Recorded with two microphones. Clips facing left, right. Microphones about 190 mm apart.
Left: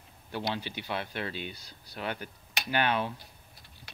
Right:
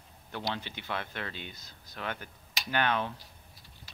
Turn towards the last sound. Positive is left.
turn(degrees=10)  # may be behind; listen again after turning